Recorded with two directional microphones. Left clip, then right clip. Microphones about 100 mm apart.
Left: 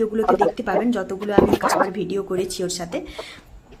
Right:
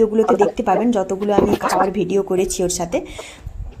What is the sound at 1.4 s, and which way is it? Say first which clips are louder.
Speech: left 1 dB; centre (ahead or behind).